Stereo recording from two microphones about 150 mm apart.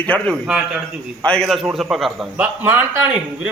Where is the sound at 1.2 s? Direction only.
5° left (ahead or behind).